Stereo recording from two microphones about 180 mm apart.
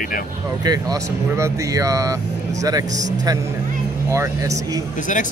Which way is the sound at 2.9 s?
40° right (ahead or behind).